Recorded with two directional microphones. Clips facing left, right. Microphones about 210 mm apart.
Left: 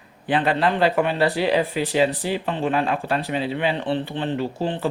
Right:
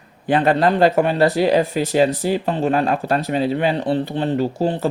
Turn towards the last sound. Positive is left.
turn(degrees=-40)  # may be behind; listen again after turning